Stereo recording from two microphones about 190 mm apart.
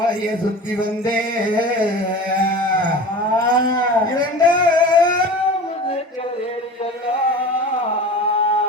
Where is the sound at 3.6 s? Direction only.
20° left (ahead or behind).